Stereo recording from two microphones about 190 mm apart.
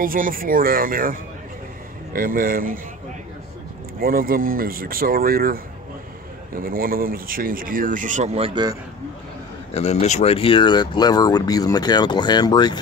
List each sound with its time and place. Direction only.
0.0 s speech: 45° right (ahead or behind)
2.1 s speech: 45° right (ahead or behind)
4.0 s speech: 50° right (ahead or behind)
6.6 s speech: 50° right (ahead or behind); by 8.7 s 25° right (ahead or behind)
9.8 s speech: 35° left (ahead or behind)